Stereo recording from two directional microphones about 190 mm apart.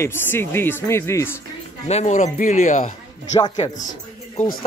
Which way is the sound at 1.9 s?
35° left (ahead or behind).